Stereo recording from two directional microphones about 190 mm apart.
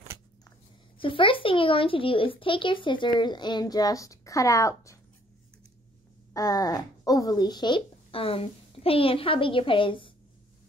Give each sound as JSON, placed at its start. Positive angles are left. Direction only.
{"t": 0.9, "sound": "speech", "side_deg": 25}
{"t": 6.3, "sound": "speech", "side_deg": 20}